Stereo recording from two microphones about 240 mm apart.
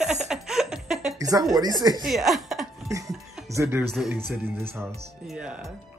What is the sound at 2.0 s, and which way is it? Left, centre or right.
Speech, centre.